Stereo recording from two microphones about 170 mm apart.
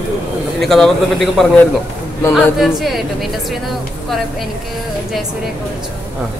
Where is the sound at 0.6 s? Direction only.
Centre (ahead or behind).